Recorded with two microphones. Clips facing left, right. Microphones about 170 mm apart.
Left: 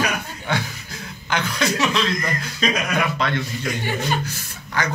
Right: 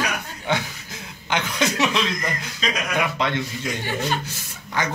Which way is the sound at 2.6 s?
55° left (ahead or behind).